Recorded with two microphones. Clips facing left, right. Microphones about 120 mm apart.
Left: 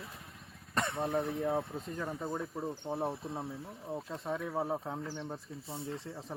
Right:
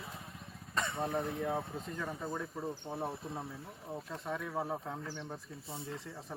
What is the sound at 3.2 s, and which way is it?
Speech, centre (ahead or behind).